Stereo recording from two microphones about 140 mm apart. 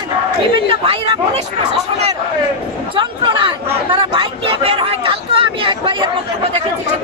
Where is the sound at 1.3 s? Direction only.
50° right (ahead or behind).